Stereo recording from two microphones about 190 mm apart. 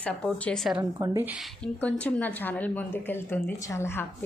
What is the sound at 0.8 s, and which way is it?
Speech, 15° right (ahead or behind).